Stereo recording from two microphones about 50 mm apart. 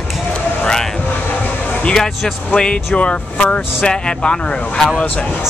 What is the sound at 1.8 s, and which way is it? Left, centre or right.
Speech, centre.